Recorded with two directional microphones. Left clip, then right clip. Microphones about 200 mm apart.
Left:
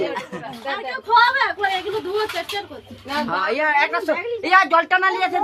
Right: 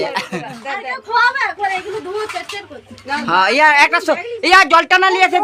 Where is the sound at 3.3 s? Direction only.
55° right (ahead or behind).